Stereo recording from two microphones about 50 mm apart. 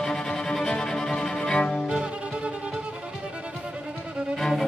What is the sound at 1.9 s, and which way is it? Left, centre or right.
Music, centre.